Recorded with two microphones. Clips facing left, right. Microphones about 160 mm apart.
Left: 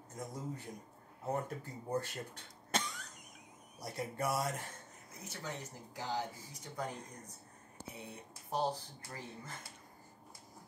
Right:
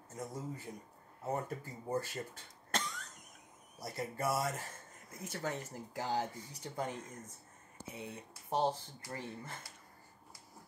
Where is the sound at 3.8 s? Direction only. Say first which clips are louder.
Right 1 dB; centre (ahead or behind).